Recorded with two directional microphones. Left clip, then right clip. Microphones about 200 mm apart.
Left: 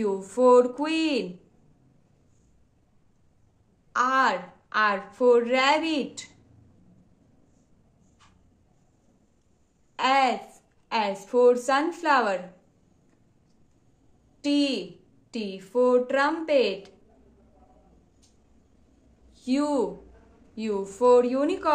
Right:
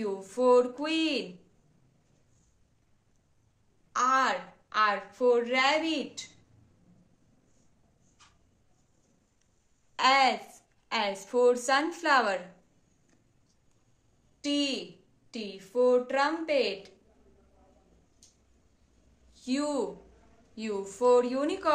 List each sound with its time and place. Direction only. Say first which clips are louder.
0.0 s a woman's voice: left 6 dB; 25° left (ahead or behind)
3.9 s a woman's voice: left 3 dB; 20° left (ahead or behind)
9.9 s a woman's voice: left 1 dB; 5° left (ahead or behind)
14.4 s a woman's voice: left 5 dB; 20° left (ahead or behind)
19.3 s a woman's voice: left 5 dB; 15° left (ahead or behind)